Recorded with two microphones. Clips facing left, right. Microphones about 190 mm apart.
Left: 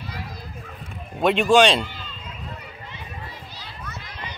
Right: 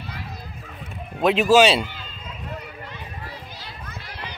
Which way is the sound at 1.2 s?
5° right (ahead or behind).